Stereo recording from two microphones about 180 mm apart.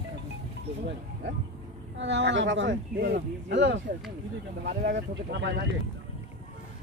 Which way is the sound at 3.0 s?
70° right (ahead or behind).